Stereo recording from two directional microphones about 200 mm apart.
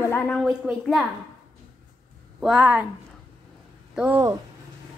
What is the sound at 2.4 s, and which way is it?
Speech, 5° right (ahead or behind).